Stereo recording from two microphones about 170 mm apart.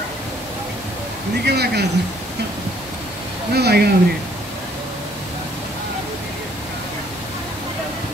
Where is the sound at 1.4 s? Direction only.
75° right (ahead or behind).